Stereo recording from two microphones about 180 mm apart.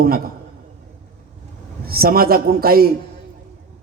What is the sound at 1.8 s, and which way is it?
A man's voice, 55° right (ahead or behind).